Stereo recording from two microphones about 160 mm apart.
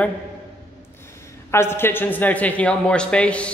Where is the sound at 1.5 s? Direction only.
15° left (ahead or behind).